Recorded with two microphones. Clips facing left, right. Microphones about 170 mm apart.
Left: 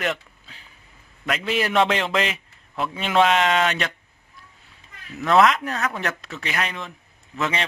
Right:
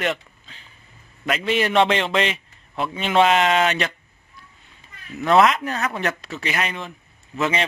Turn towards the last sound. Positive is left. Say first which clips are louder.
# right 3 dB
turn(degrees=0)  # may be behind; listen again after turning